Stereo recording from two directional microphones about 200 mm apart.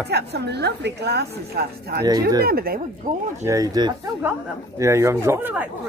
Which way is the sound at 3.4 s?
15° right (ahead or behind).